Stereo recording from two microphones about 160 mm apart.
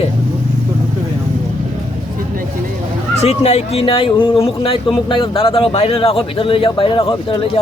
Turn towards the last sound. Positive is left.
turn(degrees=30)  # may be behind; listen again after turning